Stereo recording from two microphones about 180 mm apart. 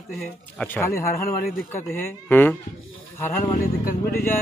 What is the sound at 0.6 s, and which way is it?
Speech, 15° left (ahead or behind).